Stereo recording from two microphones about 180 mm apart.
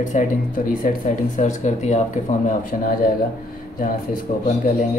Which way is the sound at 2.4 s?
50° left (ahead or behind).